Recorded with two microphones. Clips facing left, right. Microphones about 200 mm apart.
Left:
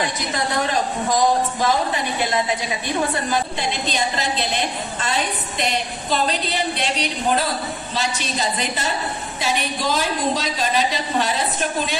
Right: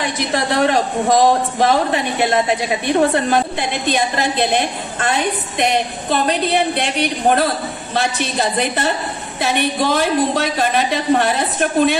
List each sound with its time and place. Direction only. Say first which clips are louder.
0.3 s a woman's voice: right 8 dB; 65° right (ahead or behind)